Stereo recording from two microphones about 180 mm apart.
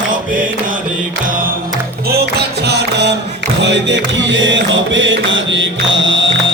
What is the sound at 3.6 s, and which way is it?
Music, 80° right.